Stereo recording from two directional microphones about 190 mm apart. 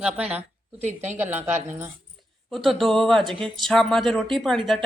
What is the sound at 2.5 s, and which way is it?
Speech, centre (ahead or behind).